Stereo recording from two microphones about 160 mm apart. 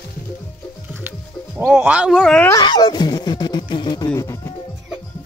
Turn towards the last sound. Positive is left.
turn(degrees=20)  # may be behind; listen again after turning